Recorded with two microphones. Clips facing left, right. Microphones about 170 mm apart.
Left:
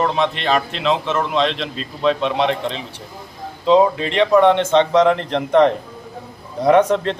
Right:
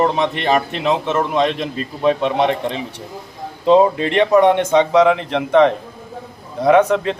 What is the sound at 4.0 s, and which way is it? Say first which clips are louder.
Speech: right 2 dB; 55° right (ahead or behind).